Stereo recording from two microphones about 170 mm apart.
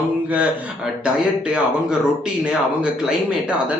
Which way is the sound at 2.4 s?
5° right (ahead or behind).